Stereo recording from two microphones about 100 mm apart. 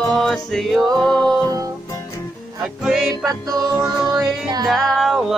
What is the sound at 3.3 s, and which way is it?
Music, 40° right (ahead or behind).